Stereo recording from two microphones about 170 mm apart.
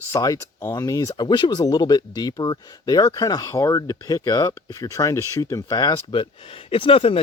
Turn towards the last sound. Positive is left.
turn(degrees=35)  # may be behind; listen again after turning